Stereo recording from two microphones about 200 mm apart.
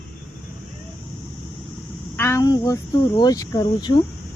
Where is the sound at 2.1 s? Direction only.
15° left (ahead or behind).